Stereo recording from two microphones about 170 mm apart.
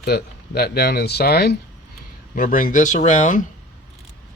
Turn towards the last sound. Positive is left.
turn(degrees=50)  # may be behind; listen again after turning